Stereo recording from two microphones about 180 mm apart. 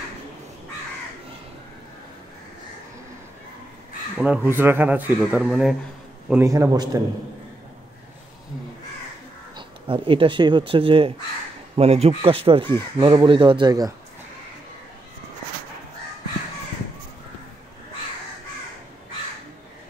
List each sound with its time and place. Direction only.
4.2 s a man's voice: 10° right (ahead or behind)
6.5 s speech: 20° right (ahead or behind)
9.6 s speech: 30° right (ahead or behind)